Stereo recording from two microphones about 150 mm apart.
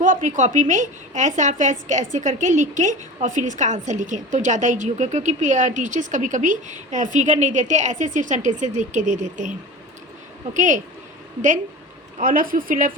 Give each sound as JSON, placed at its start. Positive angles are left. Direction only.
{"t": 0.0, "sound": "a woman's voice", "side_deg": -60}
{"t": 10.5, "sound": "a woman's voice", "side_deg": -55}
{"t": 12.2, "sound": "a woman's voice", "side_deg": -70}